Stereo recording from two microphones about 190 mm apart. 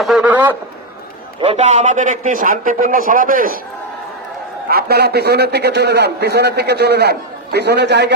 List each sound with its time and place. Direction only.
0.0 s a man's voice: 5° right (ahead or behind)
1.4 s a man's voice: 35° right (ahead or behind)
4.7 s a man's voice: 55° right (ahead or behind)